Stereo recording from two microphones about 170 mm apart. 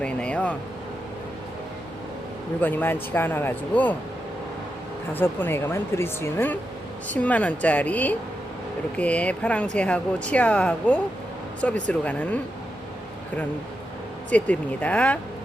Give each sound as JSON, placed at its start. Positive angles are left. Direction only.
{"t": 0.0, "sound": "speech", "side_deg": 5}
{"t": 2.6, "sound": "speech", "side_deg": 10}
{"t": 5.1, "sound": "speech", "side_deg": 10}
{"t": 14.3, "sound": "speech", "side_deg": 10}